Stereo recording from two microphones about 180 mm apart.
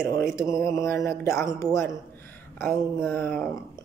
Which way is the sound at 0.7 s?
15° left (ahead or behind).